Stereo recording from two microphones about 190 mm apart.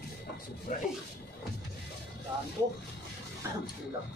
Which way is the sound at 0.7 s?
40° left (ahead or behind).